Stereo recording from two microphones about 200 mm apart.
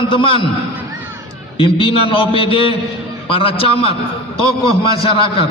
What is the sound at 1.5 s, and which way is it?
A man's voice, 25° left (ahead or behind).